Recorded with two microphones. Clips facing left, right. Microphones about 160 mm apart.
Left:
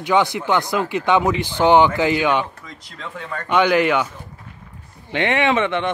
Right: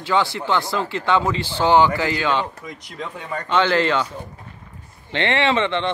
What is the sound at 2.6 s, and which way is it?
Speech, 10° right (ahead or behind).